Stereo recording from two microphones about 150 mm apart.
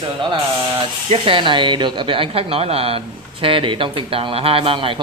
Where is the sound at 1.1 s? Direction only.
35° right (ahead or behind).